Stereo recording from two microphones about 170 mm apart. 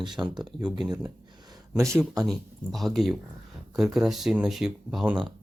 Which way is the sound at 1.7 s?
15° right (ahead or behind).